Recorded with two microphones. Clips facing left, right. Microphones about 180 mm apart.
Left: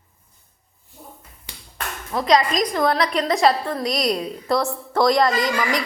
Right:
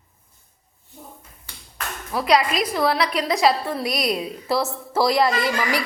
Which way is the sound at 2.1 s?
10° right (ahead or behind).